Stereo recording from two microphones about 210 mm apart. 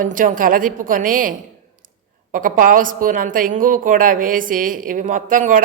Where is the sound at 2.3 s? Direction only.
40° right (ahead or behind).